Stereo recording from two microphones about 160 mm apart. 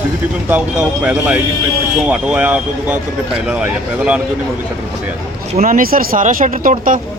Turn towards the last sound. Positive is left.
turn(degrees=-60)  # may be behind; listen again after turning